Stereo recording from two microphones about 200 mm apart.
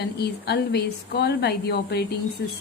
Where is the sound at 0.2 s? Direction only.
55° left (ahead or behind).